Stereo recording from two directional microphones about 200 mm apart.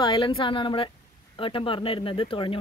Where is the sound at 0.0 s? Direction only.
25° left (ahead or behind).